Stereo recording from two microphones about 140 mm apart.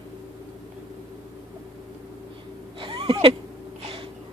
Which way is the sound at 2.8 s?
40° right (ahead or behind).